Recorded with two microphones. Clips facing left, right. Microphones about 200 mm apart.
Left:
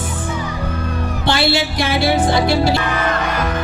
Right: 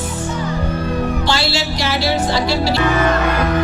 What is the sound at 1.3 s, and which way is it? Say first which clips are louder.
Speech: left 2 dB; 55° left (ahead or behind).